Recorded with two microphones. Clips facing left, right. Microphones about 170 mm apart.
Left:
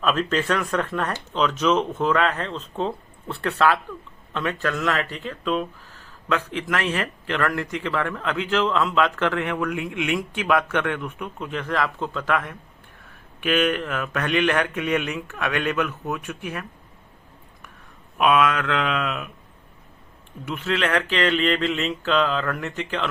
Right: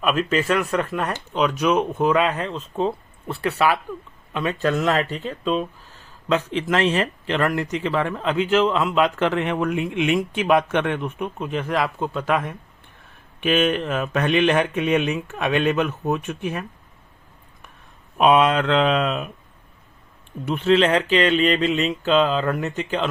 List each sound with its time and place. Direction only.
0.0 s speech: 10° right (ahead or behind); by 16.6 s 25° right (ahead or behind)
18.2 s speech: 25° right (ahead or behind)
20.4 s speech: 30° right (ahead or behind)